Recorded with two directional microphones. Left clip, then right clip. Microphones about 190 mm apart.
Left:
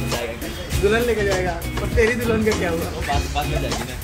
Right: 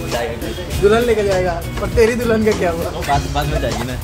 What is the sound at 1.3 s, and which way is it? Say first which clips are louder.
Speech: right 5 dB; centre (ahead or behind).